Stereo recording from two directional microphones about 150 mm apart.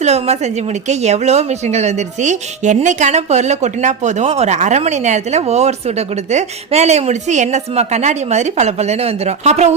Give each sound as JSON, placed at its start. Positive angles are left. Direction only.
{"t": 0.0, "sound": "speech", "side_deg": -45}